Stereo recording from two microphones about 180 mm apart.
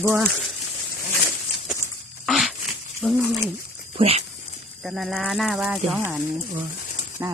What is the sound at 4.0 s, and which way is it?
Speech, 35° right (ahead or behind).